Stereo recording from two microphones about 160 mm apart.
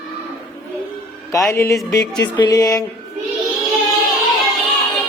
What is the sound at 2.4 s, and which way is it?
Speech, 20° left (ahead or behind).